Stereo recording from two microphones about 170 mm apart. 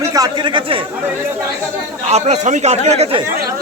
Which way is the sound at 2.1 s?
40° right (ahead or behind).